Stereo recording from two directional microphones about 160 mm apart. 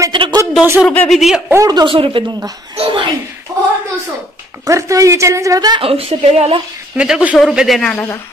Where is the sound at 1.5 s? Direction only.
20° right (ahead or behind).